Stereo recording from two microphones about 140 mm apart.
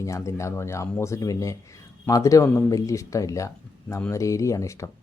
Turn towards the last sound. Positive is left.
turn(degrees=20)  # may be behind; listen again after turning